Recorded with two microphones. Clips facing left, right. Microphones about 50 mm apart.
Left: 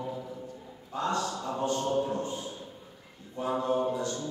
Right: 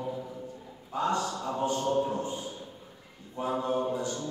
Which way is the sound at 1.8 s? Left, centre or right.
Centre.